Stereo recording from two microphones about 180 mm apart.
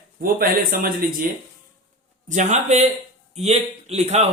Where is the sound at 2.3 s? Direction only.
40° right (ahead or behind).